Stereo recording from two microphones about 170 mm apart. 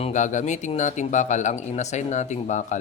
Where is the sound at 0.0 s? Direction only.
45° left (ahead or behind).